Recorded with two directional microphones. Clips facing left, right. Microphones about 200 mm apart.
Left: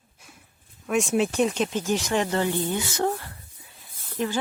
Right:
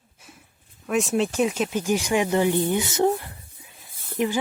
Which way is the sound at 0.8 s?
Centre (ahead or behind).